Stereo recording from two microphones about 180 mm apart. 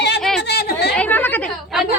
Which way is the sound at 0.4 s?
65° left (ahead or behind).